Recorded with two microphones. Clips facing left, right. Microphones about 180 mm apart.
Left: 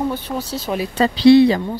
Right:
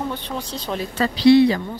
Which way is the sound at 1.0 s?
30° left (ahead or behind).